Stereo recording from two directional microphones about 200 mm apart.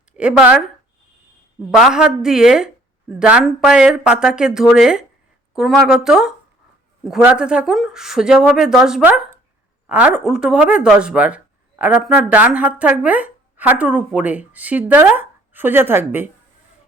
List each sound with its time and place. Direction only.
0.2 s speech: 5° right (ahead or behind)
1.7 s speech: 5° right (ahead or behind)